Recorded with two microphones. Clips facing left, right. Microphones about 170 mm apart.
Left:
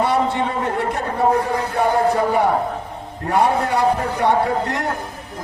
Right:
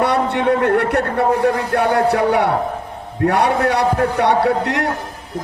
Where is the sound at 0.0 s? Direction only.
65° right (ahead or behind).